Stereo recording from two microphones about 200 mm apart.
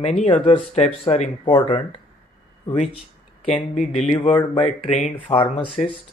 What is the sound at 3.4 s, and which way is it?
Speech, centre (ahead or behind).